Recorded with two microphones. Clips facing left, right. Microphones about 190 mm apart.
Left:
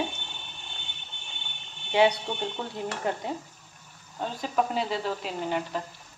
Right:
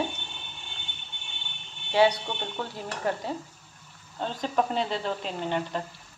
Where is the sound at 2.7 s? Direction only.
20° left (ahead or behind).